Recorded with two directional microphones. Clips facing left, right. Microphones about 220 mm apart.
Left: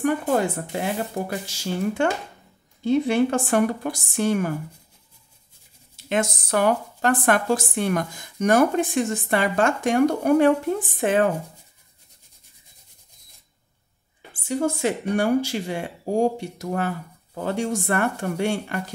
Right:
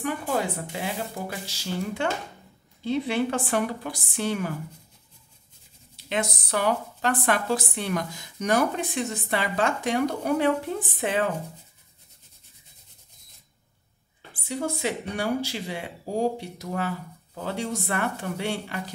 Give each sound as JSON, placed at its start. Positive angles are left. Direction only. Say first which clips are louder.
{"t": 0.0, "sound": "a woman's voice", "louder": "left 6 dB", "side_deg": 50}
{"t": 6.0, "sound": "a woman's voice", "louder": "left 5 dB", "side_deg": 50}
{"t": 14.5, "sound": "a woman's voice", "louder": "left 5 dB", "side_deg": 50}